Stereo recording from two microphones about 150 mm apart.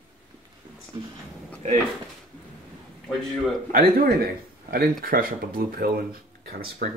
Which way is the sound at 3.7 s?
75° right (ahead or behind).